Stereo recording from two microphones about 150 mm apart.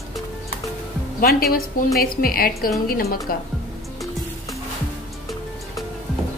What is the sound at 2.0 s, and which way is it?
A woman's voice, 80° left.